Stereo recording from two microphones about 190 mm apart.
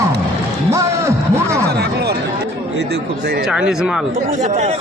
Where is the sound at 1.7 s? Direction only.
60° right (ahead or behind).